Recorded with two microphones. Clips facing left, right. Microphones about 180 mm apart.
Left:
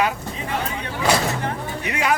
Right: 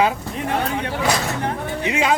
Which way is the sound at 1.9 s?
20° right (ahead or behind).